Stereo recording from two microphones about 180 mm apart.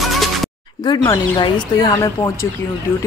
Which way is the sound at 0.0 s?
Centre (ahead or behind).